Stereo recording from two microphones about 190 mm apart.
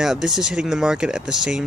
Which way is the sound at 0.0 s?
Centre (ahead or behind).